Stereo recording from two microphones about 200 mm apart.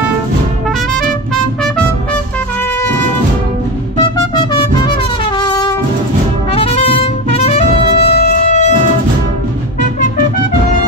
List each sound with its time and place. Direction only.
0.9 s music: 5° left (ahead or behind)
4.4 s music: 20° left (ahead or behind)